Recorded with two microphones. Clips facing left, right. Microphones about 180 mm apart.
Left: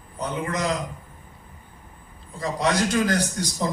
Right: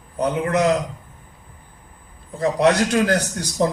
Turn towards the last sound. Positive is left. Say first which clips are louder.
# right 5 dB
turn(degrees=-65)  # may be behind; listen again after turning